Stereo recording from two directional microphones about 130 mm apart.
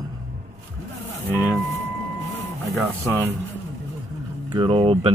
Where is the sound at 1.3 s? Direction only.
15° right (ahead or behind).